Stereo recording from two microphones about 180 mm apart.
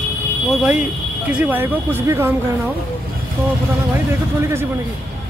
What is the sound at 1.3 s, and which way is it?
Speech, 10° right (ahead or behind).